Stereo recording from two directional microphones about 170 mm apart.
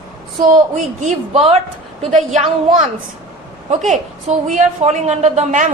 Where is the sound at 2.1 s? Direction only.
40° right (ahead or behind).